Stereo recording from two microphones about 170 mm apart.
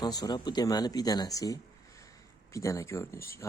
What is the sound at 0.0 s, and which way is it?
Speech, 25° left (ahead or behind).